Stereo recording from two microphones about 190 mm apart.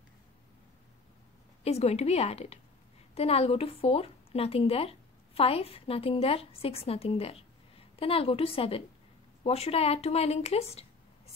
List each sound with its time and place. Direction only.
1.6 s speech: 35° left (ahead or behind)